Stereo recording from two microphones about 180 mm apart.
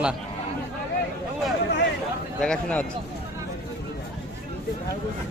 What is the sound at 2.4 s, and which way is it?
Speech, 5° left (ahead or behind).